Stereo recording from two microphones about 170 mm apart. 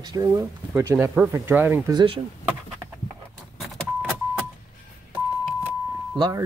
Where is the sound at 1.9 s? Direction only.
25° right (ahead or behind).